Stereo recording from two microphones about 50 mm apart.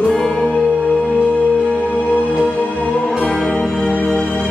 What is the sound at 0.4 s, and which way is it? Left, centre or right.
Music, left.